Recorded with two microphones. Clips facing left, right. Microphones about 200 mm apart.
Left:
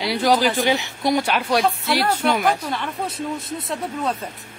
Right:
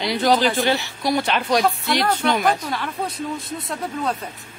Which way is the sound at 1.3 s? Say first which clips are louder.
Even; 5° left (ahead or behind).